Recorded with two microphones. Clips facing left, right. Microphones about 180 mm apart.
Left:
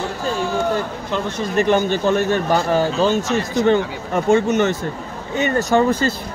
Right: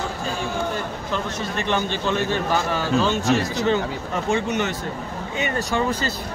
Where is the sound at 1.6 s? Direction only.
45° left (ahead or behind).